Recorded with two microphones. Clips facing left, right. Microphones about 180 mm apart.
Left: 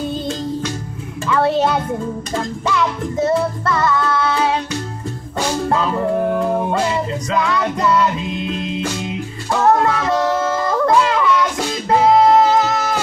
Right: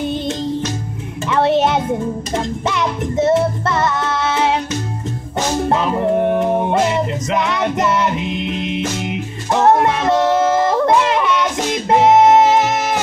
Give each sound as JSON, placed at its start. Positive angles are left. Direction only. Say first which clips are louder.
{"t": 0.0, "sound": "music", "louder": "right 2 dB", "side_deg": -20}
{"t": 1.2, "sound": "a sound", "louder": "right 1 dB", "side_deg": -20}
{"t": 2.3, "sound": "music", "louder": "left 1 dB", "side_deg": -20}
{"t": 5.6, "sound": "music", "louder": "right 2 dB", "side_deg": -20}